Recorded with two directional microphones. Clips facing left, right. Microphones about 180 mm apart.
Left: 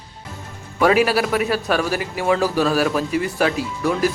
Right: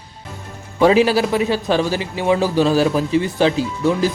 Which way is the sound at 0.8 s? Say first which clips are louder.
Right 3 dB; 25° right (ahead or behind).